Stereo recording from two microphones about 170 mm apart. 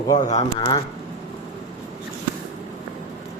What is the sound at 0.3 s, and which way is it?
Speech, 45° left (ahead or behind).